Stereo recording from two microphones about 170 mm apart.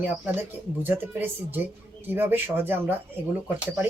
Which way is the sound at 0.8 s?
10° right (ahead or behind).